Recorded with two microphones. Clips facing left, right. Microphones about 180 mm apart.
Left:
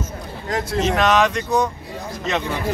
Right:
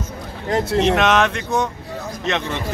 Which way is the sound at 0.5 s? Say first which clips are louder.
Right 4 dB; 25° right (ahead or behind).